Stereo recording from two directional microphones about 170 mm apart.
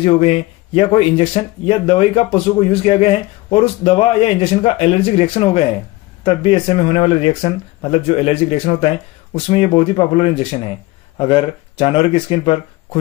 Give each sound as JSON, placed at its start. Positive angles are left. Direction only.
{"t": 0.0, "sound": "speech", "side_deg": 35}